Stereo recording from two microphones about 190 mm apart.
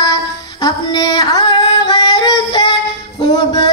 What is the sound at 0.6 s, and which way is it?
Yodeling, 20° left (ahead or behind).